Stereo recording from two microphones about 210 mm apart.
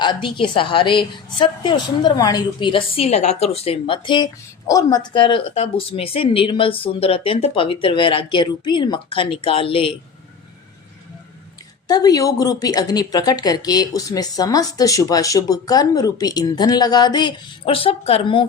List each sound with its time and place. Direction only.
0.0 s speech: 20° left (ahead or behind)
11.9 s speech: 20° left (ahead or behind)